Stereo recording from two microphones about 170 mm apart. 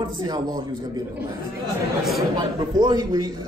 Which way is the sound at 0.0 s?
25° right (ahead or behind).